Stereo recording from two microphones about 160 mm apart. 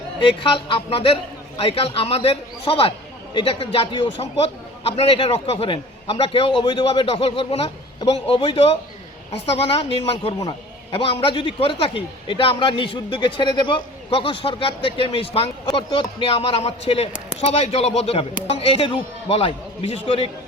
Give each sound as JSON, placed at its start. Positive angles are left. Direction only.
{"t": 0.2, "sound": "a man's voice", "side_deg": 35}